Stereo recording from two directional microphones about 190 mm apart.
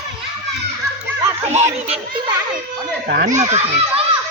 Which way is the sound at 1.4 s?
35° right (ahead or behind).